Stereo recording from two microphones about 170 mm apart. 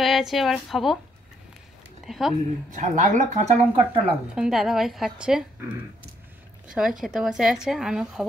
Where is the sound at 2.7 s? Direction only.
45° right (ahead or behind).